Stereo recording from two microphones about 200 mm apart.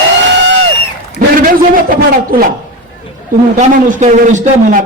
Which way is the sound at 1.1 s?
45° right (ahead or behind).